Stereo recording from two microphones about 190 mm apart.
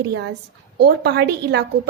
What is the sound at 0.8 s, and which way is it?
A woman's voice, 60° right (ahead or behind).